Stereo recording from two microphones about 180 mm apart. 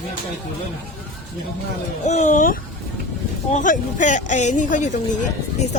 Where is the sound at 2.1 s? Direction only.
40° left (ahead or behind).